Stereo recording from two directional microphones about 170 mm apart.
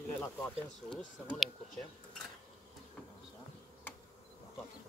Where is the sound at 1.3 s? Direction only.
Centre (ahead or behind).